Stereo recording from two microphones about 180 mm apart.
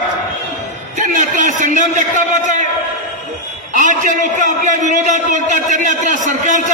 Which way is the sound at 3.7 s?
45° right (ahead or behind).